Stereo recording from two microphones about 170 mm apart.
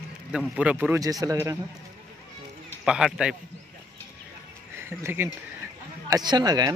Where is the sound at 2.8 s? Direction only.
5° right (ahead or behind).